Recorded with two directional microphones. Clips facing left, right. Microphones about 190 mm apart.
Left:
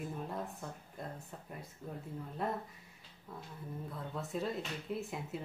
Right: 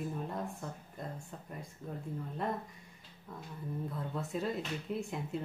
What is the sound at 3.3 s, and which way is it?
Speech, 5° left (ahead or behind).